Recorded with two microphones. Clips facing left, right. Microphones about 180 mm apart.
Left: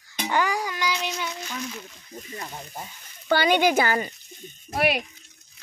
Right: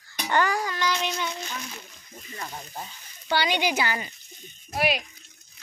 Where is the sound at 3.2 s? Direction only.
50° left (ahead or behind).